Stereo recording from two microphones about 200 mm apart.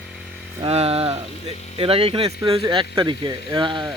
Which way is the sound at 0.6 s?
30° right (ahead or behind).